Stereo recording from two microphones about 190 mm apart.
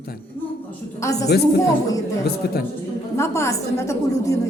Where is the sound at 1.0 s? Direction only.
15° left (ahead or behind).